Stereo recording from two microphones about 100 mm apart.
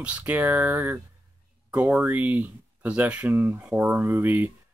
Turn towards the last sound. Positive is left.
turn(degrees=-20)  # may be behind; listen again after turning